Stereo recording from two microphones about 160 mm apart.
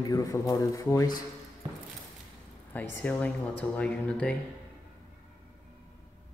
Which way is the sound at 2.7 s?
10° left (ahead or behind).